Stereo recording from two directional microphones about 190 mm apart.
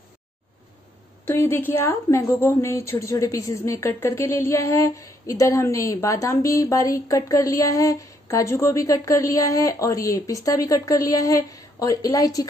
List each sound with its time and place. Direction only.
1.2 s a woman's voice: 10° left (ahead or behind)